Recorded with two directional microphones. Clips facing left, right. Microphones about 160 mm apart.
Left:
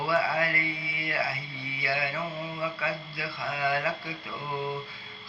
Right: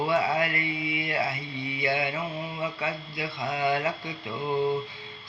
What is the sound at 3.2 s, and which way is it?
Mantra, 20° right (ahead or behind).